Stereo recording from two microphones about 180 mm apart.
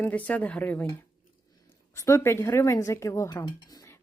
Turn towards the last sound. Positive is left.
turn(degrees=15)  # may be behind; listen again after turning